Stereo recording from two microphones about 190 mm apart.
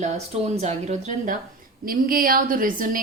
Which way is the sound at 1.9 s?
50° right (ahead or behind).